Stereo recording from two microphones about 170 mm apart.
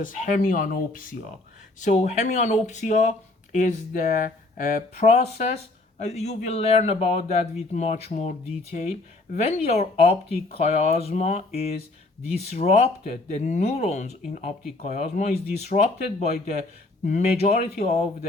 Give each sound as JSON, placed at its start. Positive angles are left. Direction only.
{"t": 0.0, "sound": "speech", "side_deg": 50}
{"t": 1.8, "sound": "speech", "side_deg": 40}
{"t": 17.1, "sound": "speech", "side_deg": 40}